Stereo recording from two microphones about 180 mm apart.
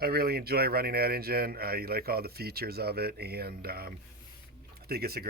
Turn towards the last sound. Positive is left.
turn(degrees=-60)  # may be behind; listen again after turning